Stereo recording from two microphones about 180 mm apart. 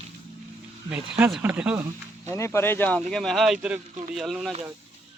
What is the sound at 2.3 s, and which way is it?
Speech, 15° left (ahead or behind).